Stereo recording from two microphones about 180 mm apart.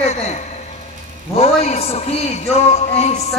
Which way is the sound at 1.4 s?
35° left (ahead or behind).